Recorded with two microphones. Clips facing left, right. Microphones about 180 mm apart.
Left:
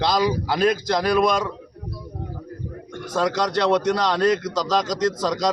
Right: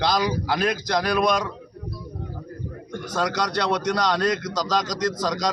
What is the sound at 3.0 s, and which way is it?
A man's voice, 25° left (ahead or behind).